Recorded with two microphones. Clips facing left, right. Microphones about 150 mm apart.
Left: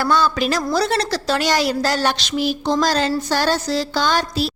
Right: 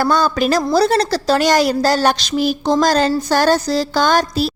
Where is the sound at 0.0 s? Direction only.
45° right (ahead or behind).